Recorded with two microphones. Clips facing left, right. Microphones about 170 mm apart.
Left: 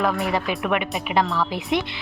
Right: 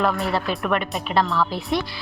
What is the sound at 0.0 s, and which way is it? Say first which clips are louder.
Speech: even; 15° left (ahead or behind).